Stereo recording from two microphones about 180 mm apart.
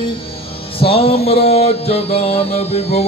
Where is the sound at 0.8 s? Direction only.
30° left (ahead or behind).